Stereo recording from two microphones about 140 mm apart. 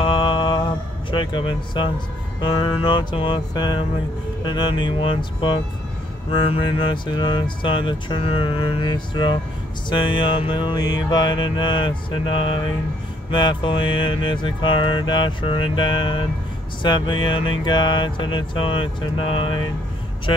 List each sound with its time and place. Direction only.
0.0 s mantra: 35° left (ahead or behind)
1.1 s speech: 35° left (ahead or behind)